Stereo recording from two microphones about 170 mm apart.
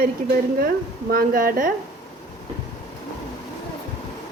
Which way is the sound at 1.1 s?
55° right (ahead or behind).